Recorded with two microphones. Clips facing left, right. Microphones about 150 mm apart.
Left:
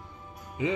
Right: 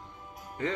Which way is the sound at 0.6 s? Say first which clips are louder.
Left 3 dB; 10° left (ahead or behind).